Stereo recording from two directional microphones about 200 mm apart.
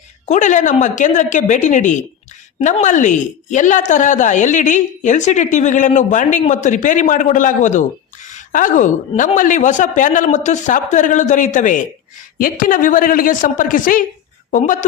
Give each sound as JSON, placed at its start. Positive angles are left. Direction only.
{"t": 0.3, "sound": "a woman's voice", "side_deg": 40}